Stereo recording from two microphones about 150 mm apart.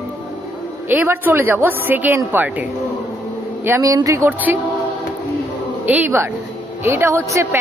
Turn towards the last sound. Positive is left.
turn(degrees=-20)  # may be behind; listen again after turning